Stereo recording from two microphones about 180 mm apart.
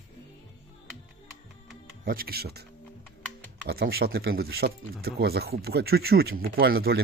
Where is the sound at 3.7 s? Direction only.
60° right (ahead or behind).